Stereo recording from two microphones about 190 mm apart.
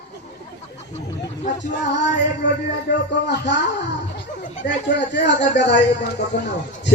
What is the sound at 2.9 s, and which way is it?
Speech, 65° left (ahead or behind).